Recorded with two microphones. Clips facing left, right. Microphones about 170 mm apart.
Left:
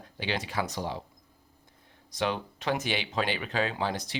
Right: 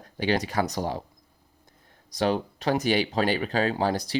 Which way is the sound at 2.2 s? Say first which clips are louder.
Right 5 dB; 35° right (ahead or behind).